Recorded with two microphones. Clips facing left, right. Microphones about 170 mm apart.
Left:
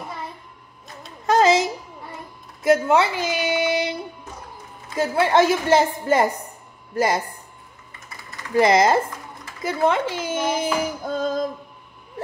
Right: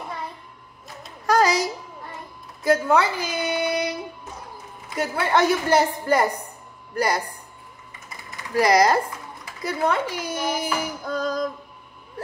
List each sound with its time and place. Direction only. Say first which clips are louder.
1.2 s music: left 3 dB; 25° left (ahead or behind)
2.6 s a woman's voice: left 2 dB; 25° left (ahead or behind)
3.4 s child singing: left 1 dB; 25° left (ahead or behind)
4.9 s a woman's voice: left 4 dB; 25° left (ahead or behind)
8.5 s a woman's voice: left 2 dB; 25° left (ahead or behind)
11.1 s music: even; 25° left (ahead or behind)